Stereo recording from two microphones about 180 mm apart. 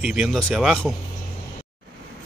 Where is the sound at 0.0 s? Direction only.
5° right (ahead or behind).